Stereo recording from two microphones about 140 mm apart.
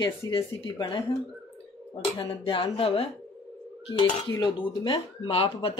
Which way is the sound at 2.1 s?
35° left (ahead or behind).